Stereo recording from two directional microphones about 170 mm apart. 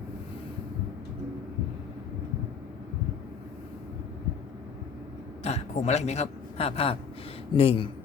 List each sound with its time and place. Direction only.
5.4 s a man's voice: 40° left (ahead or behind)